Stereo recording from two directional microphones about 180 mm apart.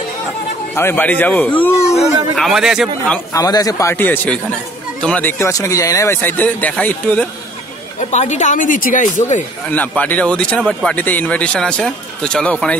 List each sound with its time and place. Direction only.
0.7 s speech: 10° left (ahead or behind)
2.3 s speech: centre (ahead or behind)
3.3 s speech: 20° left (ahead or behind)
8.0 s speech: 40° left (ahead or behind)
9.7 s speech: 10° left (ahead or behind)